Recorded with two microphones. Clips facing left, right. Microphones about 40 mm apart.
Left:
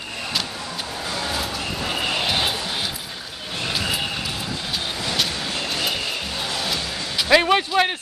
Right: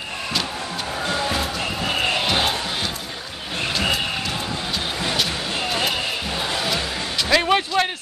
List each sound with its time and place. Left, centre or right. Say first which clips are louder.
6.4 s music: right 3 dB; right
7.2 s music: left 2 dB; centre